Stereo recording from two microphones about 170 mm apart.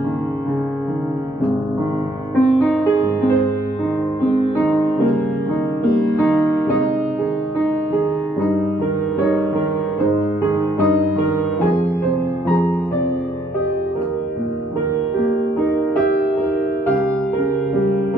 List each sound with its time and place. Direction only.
2.3 s music: centre (ahead or behind)
6.2 s music: centre (ahead or behind)
10.1 s music: 20° right (ahead or behind)